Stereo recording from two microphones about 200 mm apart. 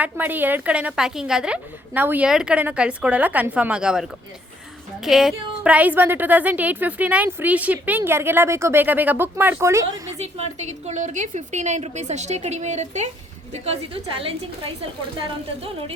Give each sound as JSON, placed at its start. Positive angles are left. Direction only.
{"t": 0.0, "sound": "a woman's voice", "side_deg": -10}
{"t": 10.2, "sound": "a woman's voice", "side_deg": -35}